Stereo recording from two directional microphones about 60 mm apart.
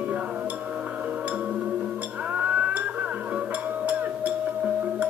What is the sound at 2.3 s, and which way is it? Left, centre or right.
Music, right.